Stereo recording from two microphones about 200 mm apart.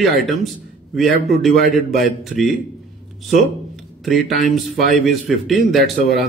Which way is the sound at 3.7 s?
Centre (ahead or behind).